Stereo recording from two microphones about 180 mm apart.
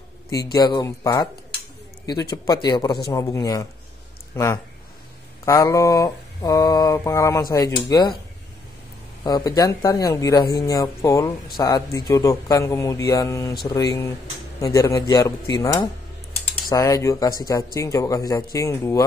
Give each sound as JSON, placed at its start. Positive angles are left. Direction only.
{"t": 0.3, "sound": "speech", "side_deg": 20}
{"t": 2.3, "sound": "speech", "side_deg": 20}
{"t": 3.1, "sound": "mantra", "side_deg": 15}
{"t": 9.2, "sound": "speech", "side_deg": 20}
{"t": 10.5, "sound": "mantra", "side_deg": 20}
{"t": 11.5, "sound": "speech", "side_deg": 20}
{"t": 16.6, "sound": "mantra", "side_deg": 20}
{"t": 17.4, "sound": "speech", "side_deg": 20}
{"t": 17.7, "sound": "mantra", "side_deg": 20}